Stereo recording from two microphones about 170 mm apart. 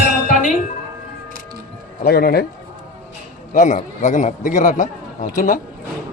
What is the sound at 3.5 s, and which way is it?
Speech, 50° left (ahead or behind).